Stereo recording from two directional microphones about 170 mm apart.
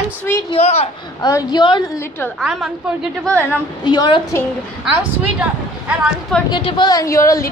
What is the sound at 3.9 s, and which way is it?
Speech, 25° left (ahead or behind).